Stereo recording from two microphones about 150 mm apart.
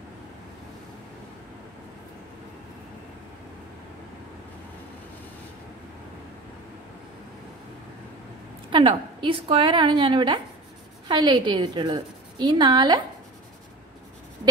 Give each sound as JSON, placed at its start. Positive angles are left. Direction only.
{"t": 8.6, "sound": "a woman's voice", "side_deg": -30}